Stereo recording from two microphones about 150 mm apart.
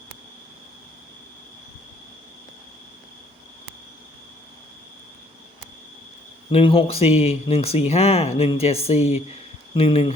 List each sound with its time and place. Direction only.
6.5 s speech: 40° left (ahead or behind)